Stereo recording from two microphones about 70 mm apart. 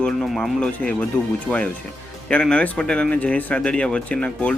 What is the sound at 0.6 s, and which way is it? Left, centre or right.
Speech, centre.